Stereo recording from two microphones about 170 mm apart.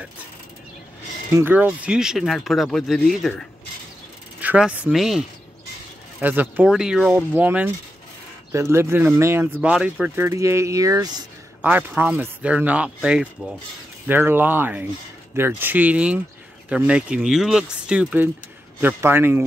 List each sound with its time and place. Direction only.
1.3 s speech: 10° right (ahead or behind)
6.2 s speech: 10° right (ahead or behind)